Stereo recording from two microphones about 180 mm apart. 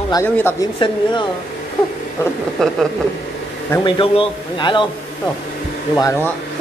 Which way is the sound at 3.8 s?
30° left (ahead or behind).